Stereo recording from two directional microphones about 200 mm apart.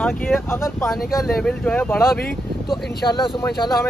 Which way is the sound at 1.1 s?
Centre (ahead or behind).